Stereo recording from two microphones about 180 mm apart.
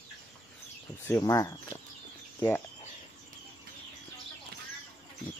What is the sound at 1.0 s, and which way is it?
Speech, 15° left (ahead or behind).